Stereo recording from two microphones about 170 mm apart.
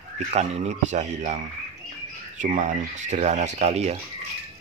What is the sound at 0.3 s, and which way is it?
Speech, 40° right (ahead or behind).